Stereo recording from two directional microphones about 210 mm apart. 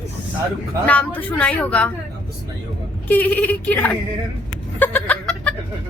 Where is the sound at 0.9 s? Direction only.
5° left (ahead or behind).